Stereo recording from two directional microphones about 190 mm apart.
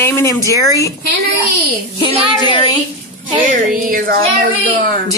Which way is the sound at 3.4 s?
45° right (ahead or behind).